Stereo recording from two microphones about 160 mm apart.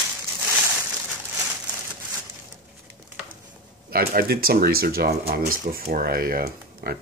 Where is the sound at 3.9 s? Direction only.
70° right (ahead or behind).